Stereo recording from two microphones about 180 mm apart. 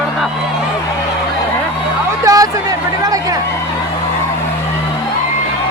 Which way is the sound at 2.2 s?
20° right (ahead or behind).